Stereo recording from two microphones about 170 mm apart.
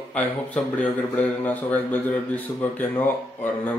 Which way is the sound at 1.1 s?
10° left (ahead or behind).